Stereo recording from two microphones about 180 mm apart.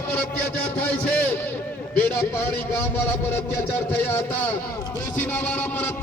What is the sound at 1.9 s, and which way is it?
Speech, 10° left (ahead or behind).